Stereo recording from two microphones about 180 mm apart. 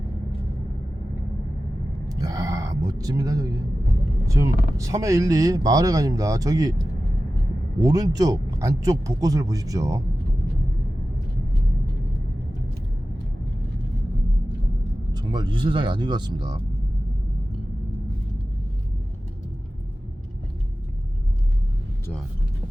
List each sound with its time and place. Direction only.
2.0 s speech: 20° right (ahead or behind)
7.8 s speech: 20° right (ahead or behind)
15.1 s speech: 20° right (ahead or behind)